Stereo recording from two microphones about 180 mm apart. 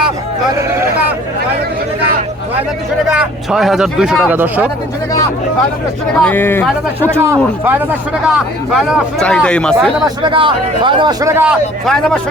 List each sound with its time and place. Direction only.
3.1 s speech: 5° right (ahead or behind)
6.1 s speech: 10° left (ahead or behind)
7.0 s speech: 15° right (ahead or behind); by 9.9 s 5° left (ahead or behind)
10.0 s a man's voice: 25° right (ahead or behind)
11.9 s speech: 5° left (ahead or behind)